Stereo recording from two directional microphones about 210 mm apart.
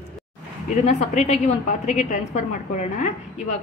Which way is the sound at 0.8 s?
30° left (ahead or behind).